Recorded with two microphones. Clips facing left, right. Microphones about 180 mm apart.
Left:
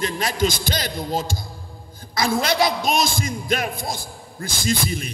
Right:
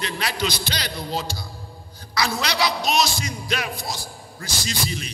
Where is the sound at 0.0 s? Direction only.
45° left (ahead or behind).